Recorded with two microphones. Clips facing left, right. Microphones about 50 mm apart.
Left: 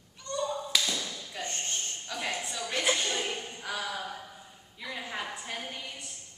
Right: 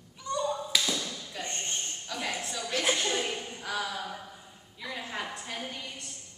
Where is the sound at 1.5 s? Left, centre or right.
Right.